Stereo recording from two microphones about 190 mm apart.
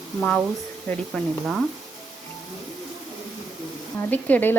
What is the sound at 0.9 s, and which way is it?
Speech, centre (ahead or behind).